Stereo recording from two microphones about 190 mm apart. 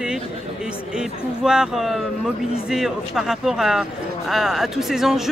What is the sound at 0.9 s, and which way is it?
Speech, 5° right (ahead or behind).